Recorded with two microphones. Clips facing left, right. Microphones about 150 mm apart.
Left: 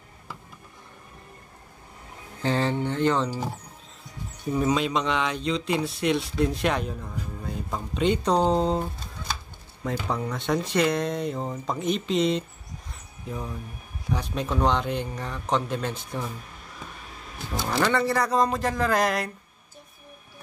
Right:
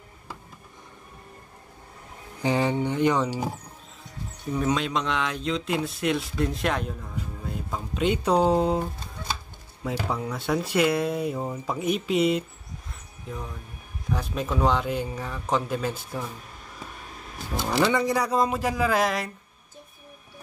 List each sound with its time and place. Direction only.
2.4 s speech: 15° right (ahead or behind)
4.6 s speech: centre (ahead or behind)
9.8 s speech: 5° right (ahead or behind)
17.6 s speech: 10° right (ahead or behind)